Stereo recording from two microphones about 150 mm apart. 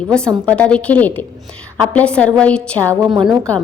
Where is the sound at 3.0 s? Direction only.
30° right (ahead or behind).